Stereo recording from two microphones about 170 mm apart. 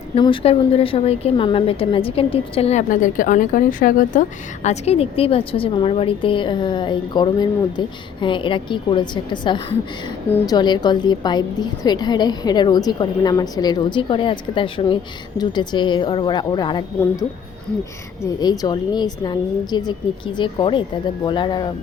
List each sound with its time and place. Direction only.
0.2 s a woman's voice: 30° left (ahead or behind)
18.2 s a woman's voice: 20° left (ahead or behind)